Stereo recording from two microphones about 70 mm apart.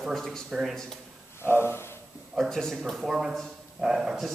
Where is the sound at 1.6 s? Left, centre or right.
Left.